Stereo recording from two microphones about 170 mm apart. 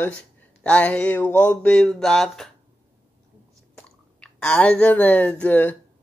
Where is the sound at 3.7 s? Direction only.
5° left (ahead or behind).